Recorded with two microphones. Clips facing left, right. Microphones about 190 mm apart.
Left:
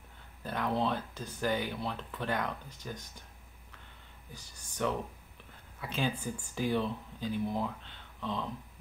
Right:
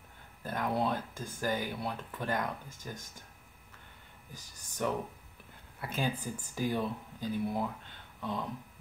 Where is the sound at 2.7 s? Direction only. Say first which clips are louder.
Left 1 dB; 45° right (ahead or behind).